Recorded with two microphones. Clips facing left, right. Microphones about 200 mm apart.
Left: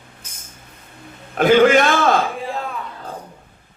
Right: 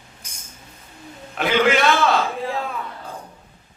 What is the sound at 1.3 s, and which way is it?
Speech, 45° left (ahead or behind).